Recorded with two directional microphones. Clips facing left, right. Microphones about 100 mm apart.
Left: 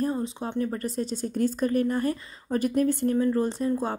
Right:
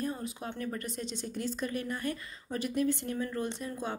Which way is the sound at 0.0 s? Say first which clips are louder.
Left 8 dB; 30° left (ahead or behind).